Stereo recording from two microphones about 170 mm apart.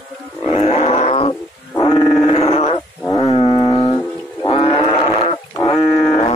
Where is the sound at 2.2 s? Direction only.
35° left (ahead or behind).